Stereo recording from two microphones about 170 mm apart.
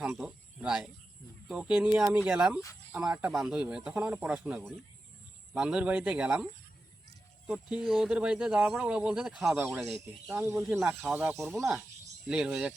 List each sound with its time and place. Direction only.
0.0 s speech: 5° right (ahead or behind)
10.2 s speech: 15° right (ahead or behind)